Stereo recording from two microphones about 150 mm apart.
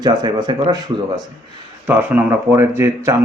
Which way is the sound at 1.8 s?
10° right (ahead or behind).